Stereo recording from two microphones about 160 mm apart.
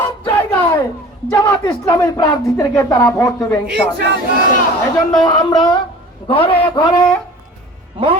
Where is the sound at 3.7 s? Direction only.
90° right.